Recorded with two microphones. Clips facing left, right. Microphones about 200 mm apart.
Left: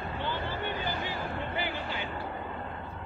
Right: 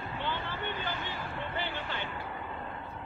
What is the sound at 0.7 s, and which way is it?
Vehicle, 40° left (ahead or behind).